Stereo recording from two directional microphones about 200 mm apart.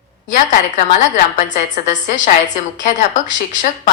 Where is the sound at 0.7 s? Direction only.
40° left (ahead or behind).